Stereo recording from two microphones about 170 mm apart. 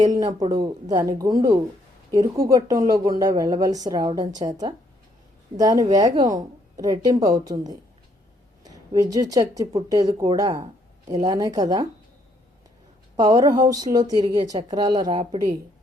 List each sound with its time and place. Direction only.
0.0 s a woman's voice: 20° right (ahead or behind)
8.6 s a woman's voice: 20° right (ahead or behind)
13.1 s a woman's voice: 20° right (ahead or behind)